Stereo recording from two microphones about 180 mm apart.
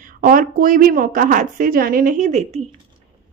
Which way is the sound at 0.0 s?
50° right (ahead or behind).